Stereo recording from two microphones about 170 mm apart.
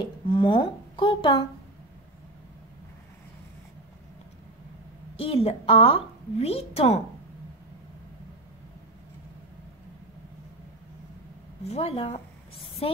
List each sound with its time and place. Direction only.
0.3 s a woman's voice: 30° left (ahead or behind)
5.1 s a woman's voice: 35° left (ahead or behind)
11.6 s a woman's voice: 35° left (ahead or behind)